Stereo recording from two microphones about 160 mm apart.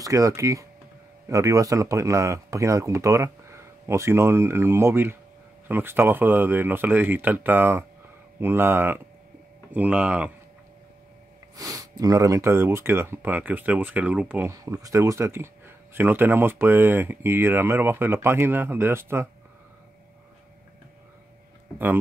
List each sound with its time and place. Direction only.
0.0 s speech: 20° right (ahead or behind)
11.5 s speech: 20° right (ahead or behind)